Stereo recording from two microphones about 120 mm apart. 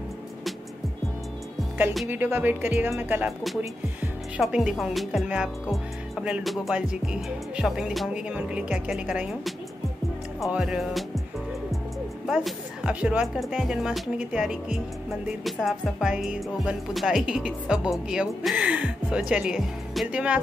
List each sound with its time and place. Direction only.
2.0 s speech: 15° right (ahead or behind)
4.4 s speech: 5° right (ahead or behind)
10.5 s speech: 5° right (ahead or behind)
12.3 s speech: 5° right (ahead or behind)